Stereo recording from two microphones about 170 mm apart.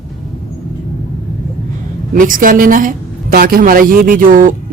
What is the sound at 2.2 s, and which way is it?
A woman's voice, 50° right (ahead or behind).